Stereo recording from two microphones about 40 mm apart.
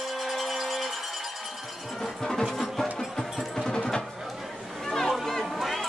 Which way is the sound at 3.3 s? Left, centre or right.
Centre.